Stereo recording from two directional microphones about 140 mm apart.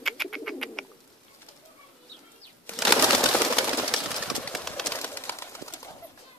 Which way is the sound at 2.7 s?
15° left (ahead or behind).